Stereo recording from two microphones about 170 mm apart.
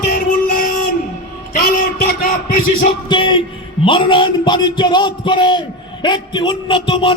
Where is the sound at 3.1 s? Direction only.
30° left (ahead or behind).